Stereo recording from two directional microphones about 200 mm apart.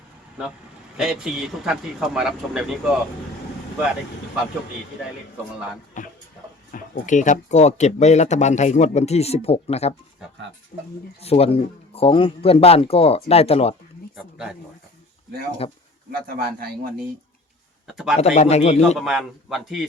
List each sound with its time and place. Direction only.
0.9 s speech: centre (ahead or behind)
6.0 s speech: 40° left (ahead or behind)
10.7 s speech: 50° left (ahead or behind)
11.2 s speech: 30° left (ahead or behind)
15.6 s speech: 25° left (ahead or behind)
16.2 s speech: 50° right (ahead or behind)
17.8 s speech: centre (ahead or behind)
18.3 s speech: 30° left (ahead or behind)
18.9 s speech: centre (ahead or behind)